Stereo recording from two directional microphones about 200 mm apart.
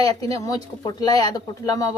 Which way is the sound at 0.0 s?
20° left (ahead or behind).